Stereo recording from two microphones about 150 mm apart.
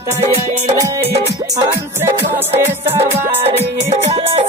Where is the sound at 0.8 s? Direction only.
25° right (ahead or behind).